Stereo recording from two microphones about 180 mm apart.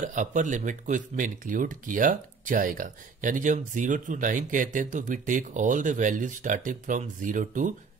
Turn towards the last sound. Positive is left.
turn(degrees=-45)  # may be behind; listen again after turning